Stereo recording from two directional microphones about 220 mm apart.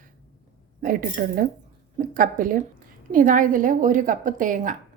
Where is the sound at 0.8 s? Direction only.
40° right (ahead or behind).